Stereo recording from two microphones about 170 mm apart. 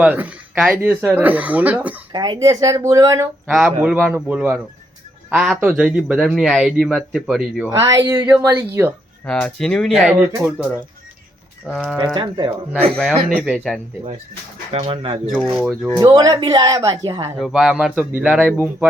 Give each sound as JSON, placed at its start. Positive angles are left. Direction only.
{"t": 0.0, "sound": "speech", "side_deg": -10}
{"t": 2.1, "sound": "speech", "side_deg": -25}
{"t": 3.5, "sound": "a man's voice", "side_deg": -5}
{"t": 7.7, "sound": "speech", "side_deg": -20}
{"t": 9.2, "sound": "a man's voice", "side_deg": 5}
{"t": 11.6, "sound": "a man's voice", "side_deg": -5}
{"t": 12.1, "sound": "speech", "side_deg": -30}
{"t": 13.0, "sound": "a man's voice", "side_deg": -5}
{"t": 14.7, "sound": "speech", "side_deg": -35}
{"t": 15.4, "sound": "a man's voice", "side_deg": 0}
{"t": 16.0, "sound": "speech", "side_deg": -20}
{"t": 17.3, "sound": "a man's voice", "side_deg": 0}